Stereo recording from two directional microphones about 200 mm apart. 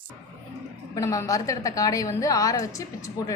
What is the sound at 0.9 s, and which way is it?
A woman's voice, 15° left (ahead or behind).